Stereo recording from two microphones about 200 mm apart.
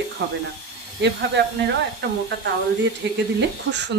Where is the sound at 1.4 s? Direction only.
55° right (ahead or behind).